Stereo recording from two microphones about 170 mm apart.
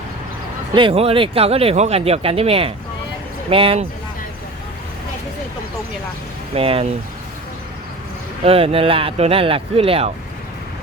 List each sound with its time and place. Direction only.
0.7 s speech: 30° right (ahead or behind)
6.5 s speech: 35° right (ahead or behind)
8.4 s speech: 35° right (ahead or behind)